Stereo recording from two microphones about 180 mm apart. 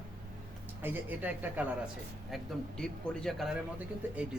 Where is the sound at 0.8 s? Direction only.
10° right (ahead or behind).